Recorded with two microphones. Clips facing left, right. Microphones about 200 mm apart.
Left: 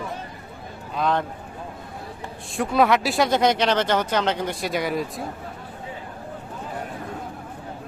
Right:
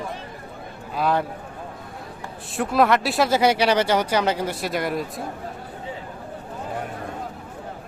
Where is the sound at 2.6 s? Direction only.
Centre (ahead or behind).